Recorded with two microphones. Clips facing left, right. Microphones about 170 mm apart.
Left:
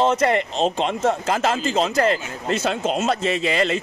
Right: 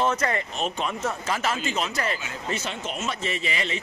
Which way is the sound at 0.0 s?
25° left (ahead or behind).